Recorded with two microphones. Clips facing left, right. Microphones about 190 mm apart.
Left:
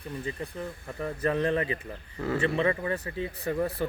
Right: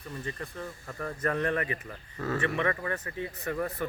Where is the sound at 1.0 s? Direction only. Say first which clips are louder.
Left 3 dB; 15° left (ahead or behind).